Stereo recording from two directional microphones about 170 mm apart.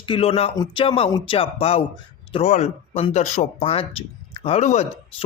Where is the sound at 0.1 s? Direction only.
35° left (ahead or behind).